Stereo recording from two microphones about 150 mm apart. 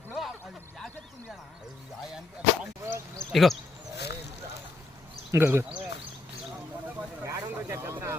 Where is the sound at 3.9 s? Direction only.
90° left.